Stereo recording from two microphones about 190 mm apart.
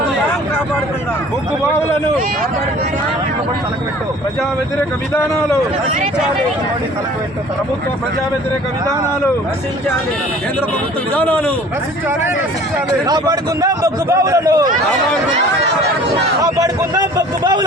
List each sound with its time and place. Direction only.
5.1 s speech: 15° left (ahead or behind)
11.1 s speech: 10° left (ahead or behind)
13.1 s a man's voice: 20° right (ahead or behind)
16.4 s a man's voice: 20° right (ahead or behind)